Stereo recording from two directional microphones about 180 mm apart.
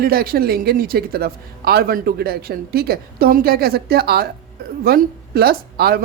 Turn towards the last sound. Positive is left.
turn(degrees=-60)  # may be behind; listen again after turning